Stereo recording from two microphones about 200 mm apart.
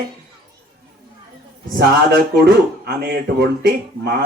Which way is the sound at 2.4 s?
55° right (ahead or behind).